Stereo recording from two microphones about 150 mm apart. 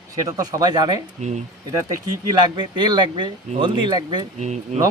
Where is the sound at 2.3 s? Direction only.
30° right (ahead or behind).